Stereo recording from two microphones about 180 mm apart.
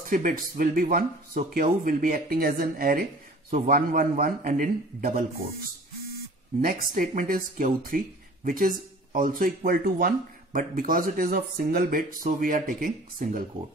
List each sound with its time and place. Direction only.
0.1 s speech: 50° right (ahead or behind)
6.6 s speech: 50° right (ahead or behind)